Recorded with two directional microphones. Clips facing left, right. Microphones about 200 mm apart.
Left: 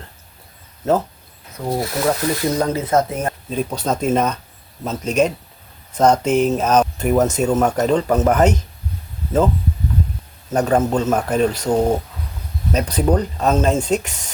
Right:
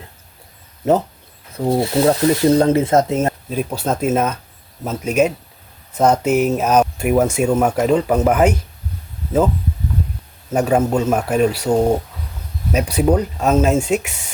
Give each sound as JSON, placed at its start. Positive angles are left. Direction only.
{"t": 1.5, "sound": "speech", "side_deg": -25}
{"t": 3.5, "sound": "speech", "side_deg": -5}
{"t": 10.5, "sound": "speech", "side_deg": -10}
{"t": 12.7, "sound": "speech", "side_deg": -10}